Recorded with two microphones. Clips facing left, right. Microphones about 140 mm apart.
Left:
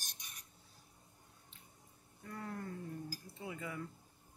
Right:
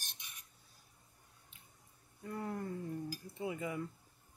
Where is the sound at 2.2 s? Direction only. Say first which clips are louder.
Right 4 dB; 25° right (ahead or behind).